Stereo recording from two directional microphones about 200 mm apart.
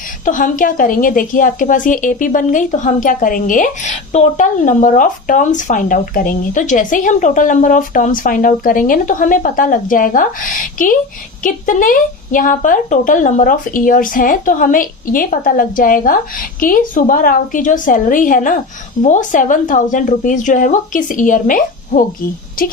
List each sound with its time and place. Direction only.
0.3 s a woman's voice: 40° left (ahead or behind)